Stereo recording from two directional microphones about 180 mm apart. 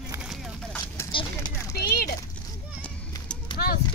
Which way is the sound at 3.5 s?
25° left (ahead or behind).